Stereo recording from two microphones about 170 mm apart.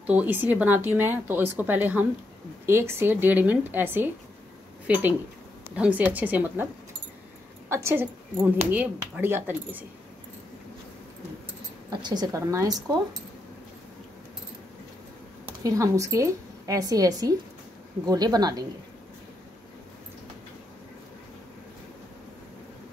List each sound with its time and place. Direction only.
0.0 s speech: 10° right (ahead or behind)
7.7 s speech: 15° right (ahead or behind)
12.0 s speech: 25° right (ahead or behind)
15.4 s a woman's voice: 20° right (ahead or behind)